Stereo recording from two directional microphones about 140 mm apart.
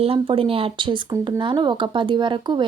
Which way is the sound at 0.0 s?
40° right (ahead or behind).